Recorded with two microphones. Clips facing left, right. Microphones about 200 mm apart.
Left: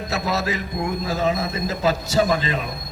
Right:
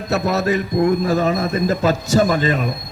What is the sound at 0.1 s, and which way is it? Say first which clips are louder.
A man's voice: right 7 dB; 60° right (ahead or behind).